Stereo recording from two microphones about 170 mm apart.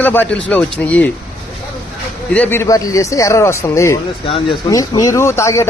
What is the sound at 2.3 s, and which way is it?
A man's voice, 10° left (ahead or behind).